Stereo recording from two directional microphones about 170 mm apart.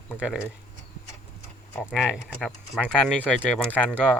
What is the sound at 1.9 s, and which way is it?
Speech, 5° right (ahead or behind).